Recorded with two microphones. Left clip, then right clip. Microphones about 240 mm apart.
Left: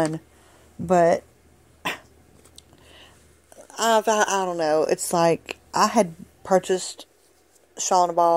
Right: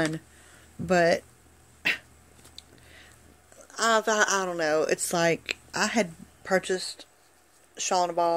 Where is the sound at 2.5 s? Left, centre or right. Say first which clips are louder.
Even; left.